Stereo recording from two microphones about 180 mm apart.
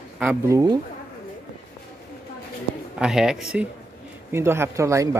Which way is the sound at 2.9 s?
5° right (ahead or behind).